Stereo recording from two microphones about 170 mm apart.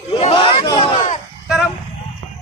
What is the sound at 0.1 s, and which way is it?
Crowd, 35° left (ahead or behind).